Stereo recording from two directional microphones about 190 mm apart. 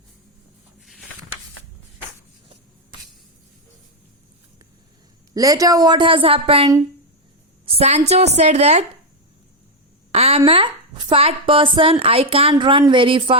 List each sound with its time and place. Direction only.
5.3 s a woman's voice: 20° right (ahead or behind); by 8.8 s 35° right (ahead or behind)
10.1 s a woman's voice: 35° right (ahead or behind)